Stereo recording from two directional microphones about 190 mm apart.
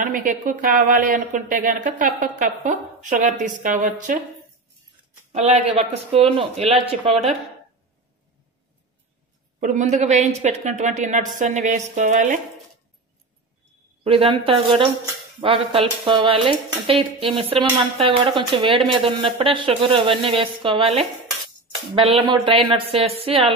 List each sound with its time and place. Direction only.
0.0 s a woman's voice: 45° right (ahead or behind)
5.3 s speech: 35° right (ahead or behind)
9.6 s speech: 40° right (ahead or behind)
14.0 s speech: 30° right (ahead or behind)